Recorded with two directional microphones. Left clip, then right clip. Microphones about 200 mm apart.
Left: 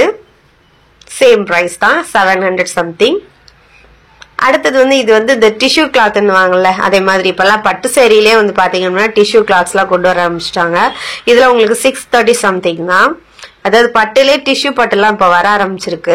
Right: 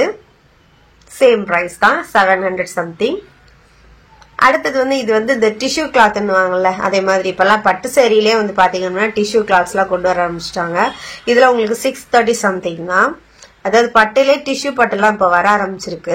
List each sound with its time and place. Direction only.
1.2 s a woman's voice: 20° left (ahead or behind)
4.2 s a woman's voice: 20° left (ahead or behind)